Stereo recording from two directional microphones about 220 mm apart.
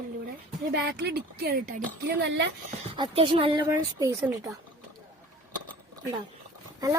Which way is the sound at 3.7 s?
15° right (ahead or behind).